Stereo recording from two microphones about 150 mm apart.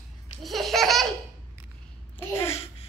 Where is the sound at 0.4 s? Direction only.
Centre (ahead or behind).